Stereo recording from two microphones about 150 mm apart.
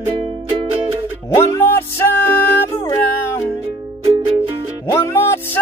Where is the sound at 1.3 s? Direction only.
15° left (ahead or behind).